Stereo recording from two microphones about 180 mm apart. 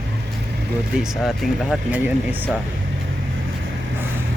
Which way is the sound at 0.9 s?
5° right (ahead or behind).